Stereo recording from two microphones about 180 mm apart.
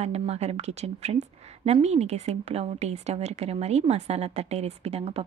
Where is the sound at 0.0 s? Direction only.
35° right (ahead or behind).